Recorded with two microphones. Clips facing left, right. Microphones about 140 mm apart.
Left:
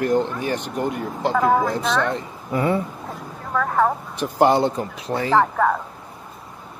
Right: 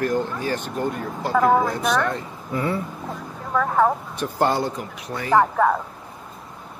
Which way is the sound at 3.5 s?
5° right (ahead or behind).